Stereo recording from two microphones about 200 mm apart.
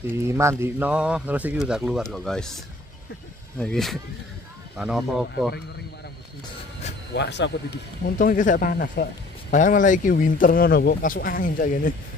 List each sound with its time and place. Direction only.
0.1 s speech: 15° right (ahead or behind)
7.2 s speech: 60° left (ahead or behind)
8.2 s speech: 40° left (ahead or behind)